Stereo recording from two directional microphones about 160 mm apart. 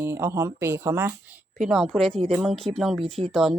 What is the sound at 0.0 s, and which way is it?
A woman's voice, 15° right (ahead or behind).